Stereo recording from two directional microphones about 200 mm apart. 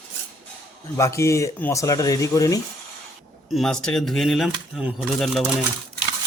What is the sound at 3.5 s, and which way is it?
Speech, centre (ahead or behind).